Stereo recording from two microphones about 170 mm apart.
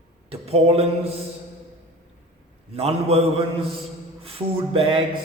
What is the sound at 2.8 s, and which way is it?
Speech, 35° right (ahead or behind).